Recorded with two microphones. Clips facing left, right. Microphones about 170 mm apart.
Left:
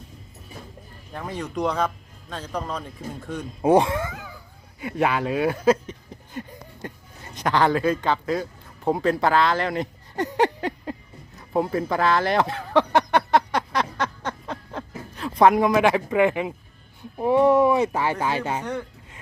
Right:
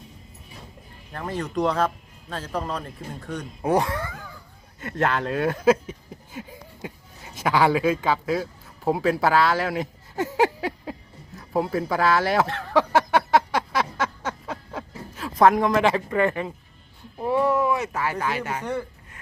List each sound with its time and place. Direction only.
1.1 s a man's voice: centre (ahead or behind)
3.6 s speech: 25° left (ahead or behind)
4.8 s speech: 10° left (ahead or behind)
5.6 s a sound: 10° right (ahead or behind)
7.3 s a man's voice: 5° right (ahead or behind)
11.3 s a sound: centre (ahead or behind)
17.2 s speech: 20° left (ahead or behind)
18.6 s speech: 10° right (ahead or behind)